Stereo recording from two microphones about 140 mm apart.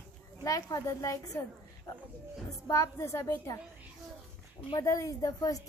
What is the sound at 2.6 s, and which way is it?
Speech, 20° left (ahead or behind).